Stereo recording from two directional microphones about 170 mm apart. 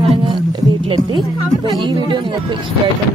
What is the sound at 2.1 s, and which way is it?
Speech, 30° right (ahead or behind).